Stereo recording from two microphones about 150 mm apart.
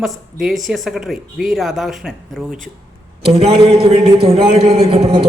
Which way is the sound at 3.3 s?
45° right (ahead or behind).